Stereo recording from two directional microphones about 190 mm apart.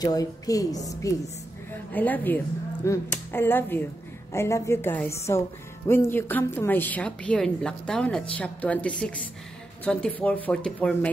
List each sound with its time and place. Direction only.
0.0 s a woman's voice: 20° left (ahead or behind)